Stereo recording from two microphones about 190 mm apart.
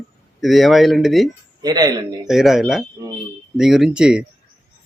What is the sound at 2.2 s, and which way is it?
Speech, centre (ahead or behind).